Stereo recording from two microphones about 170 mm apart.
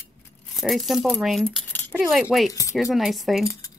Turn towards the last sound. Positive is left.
turn(degrees=0)  # may be behind; listen again after turning